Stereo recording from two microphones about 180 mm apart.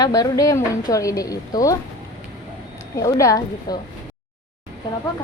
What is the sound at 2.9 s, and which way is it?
Speech, 20° left (ahead or behind).